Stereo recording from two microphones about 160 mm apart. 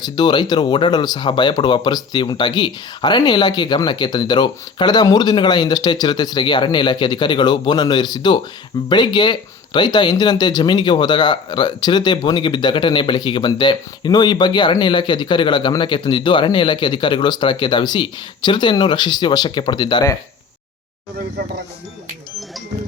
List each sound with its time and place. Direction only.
0.0 s speech: 25° left (ahead or behind)